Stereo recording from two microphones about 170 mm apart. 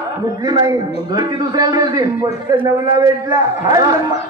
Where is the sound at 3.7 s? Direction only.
20° right (ahead or behind).